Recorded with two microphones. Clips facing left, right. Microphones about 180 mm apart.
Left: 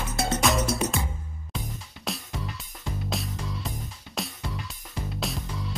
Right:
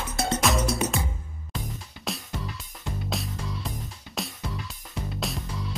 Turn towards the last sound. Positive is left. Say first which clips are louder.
# even
turn(degrees=0)  # may be behind; listen again after turning